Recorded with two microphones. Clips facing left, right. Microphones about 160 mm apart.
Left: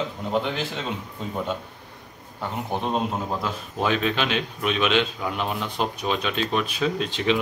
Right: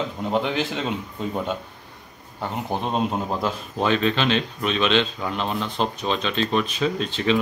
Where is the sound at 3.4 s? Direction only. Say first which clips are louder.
Right 3 dB; 5° left (ahead or behind).